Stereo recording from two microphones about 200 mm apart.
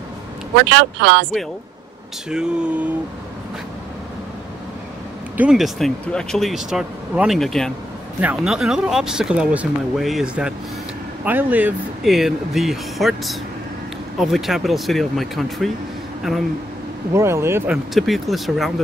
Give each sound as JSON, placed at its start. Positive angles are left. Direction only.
{"t": 0.7, "sound": "speech", "side_deg": -60}
{"t": 2.2, "sound": "speech", "side_deg": -5}
{"t": 5.4, "sound": "speech", "side_deg": 0}
{"t": 17.1, "sound": "speech", "side_deg": -15}
{"t": 17.9, "sound": "speech", "side_deg": 0}